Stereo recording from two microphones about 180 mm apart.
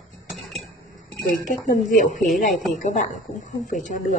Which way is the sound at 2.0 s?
45° left (ahead or behind).